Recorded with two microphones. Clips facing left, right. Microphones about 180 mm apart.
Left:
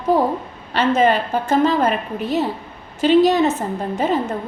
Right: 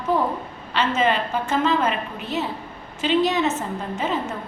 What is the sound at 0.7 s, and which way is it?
A woman's voice, 40° left (ahead or behind).